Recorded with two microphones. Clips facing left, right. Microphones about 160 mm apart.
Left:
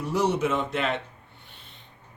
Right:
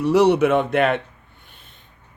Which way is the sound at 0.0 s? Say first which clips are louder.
Right 9 dB; 75° right (ahead or behind).